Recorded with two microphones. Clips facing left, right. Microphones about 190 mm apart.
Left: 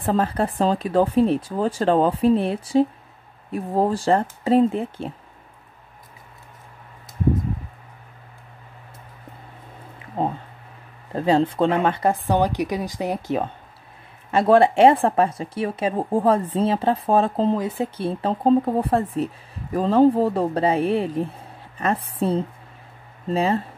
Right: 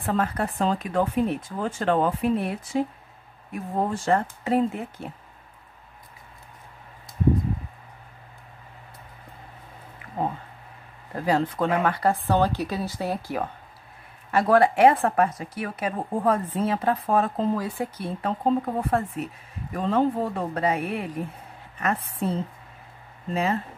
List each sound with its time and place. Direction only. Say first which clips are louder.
0.0 s speech: left 4 dB; 30° left (ahead or behind)
11.1 s speech: left 5 dB; 25° left (ahead or behind)